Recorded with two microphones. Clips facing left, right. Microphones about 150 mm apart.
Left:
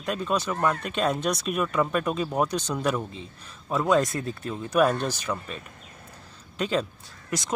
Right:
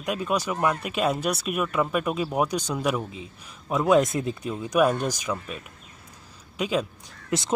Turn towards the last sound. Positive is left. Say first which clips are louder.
# right 3 dB
turn(degrees=-25)  # may be behind; listen again after turning